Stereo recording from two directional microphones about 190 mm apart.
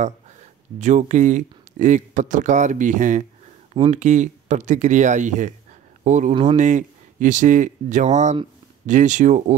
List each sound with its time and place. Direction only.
0.7 s speech: 40° right (ahead or behind)